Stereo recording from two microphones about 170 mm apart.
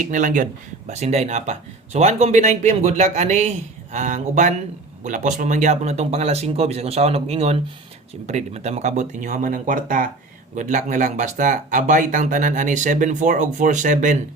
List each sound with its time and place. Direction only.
0.0 s speech: 50° right (ahead or behind)